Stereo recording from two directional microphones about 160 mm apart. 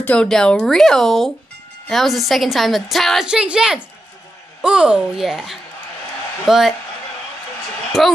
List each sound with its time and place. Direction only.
0.0 s a woman's voice: 5° left (ahead or behind)
8.0 s a woman's voice: centre (ahead or behind)